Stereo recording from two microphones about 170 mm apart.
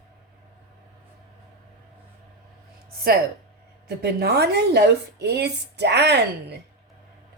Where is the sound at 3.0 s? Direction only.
65° right (ahead or behind).